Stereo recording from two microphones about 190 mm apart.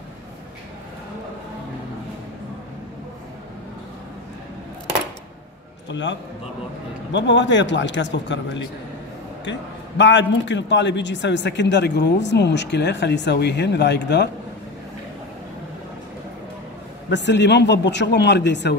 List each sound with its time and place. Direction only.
5.9 s a man's voice: 70° left (ahead or behind)
9.4 s a man's voice: 70° left (ahead or behind)
17.1 s speech: 65° left (ahead or behind)